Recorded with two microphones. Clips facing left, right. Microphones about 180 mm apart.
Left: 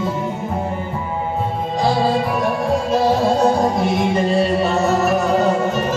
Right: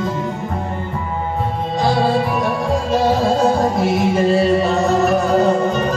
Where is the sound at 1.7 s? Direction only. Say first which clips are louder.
Right 1 dB; centre (ahead or behind).